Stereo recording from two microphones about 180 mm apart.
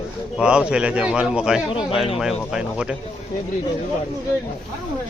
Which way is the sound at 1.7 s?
30° left (ahead or behind).